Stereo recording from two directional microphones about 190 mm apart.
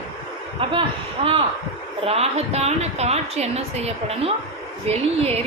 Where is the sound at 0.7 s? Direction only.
30° right (ahead or behind).